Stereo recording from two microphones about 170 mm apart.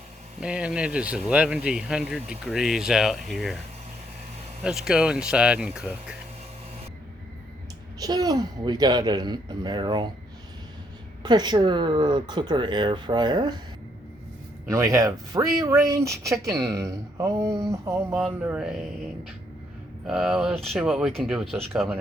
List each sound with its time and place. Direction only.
0.3 s speech: 5° right (ahead or behind)
4.6 s speech: 5° right (ahead or behind)
7.9 s speech: 20° right (ahead or behind)
11.2 s speech: 25° right (ahead or behind)
14.7 s speech: 20° right (ahead or behind)
18.1 s speech: 5° right (ahead or behind)
20.1 s speech: 5° right (ahead or behind)